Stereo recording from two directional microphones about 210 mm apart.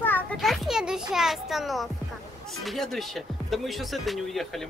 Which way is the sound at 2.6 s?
Centre (ahead or behind).